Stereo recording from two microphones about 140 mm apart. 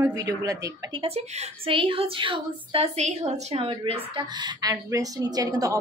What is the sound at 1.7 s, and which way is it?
A woman's voice, 40° right (ahead or behind).